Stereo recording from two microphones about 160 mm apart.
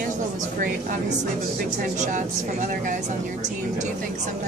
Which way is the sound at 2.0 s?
50° right (ahead or behind).